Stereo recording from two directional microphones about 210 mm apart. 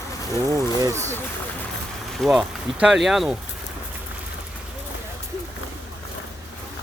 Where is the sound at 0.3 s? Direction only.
15° right (ahead or behind).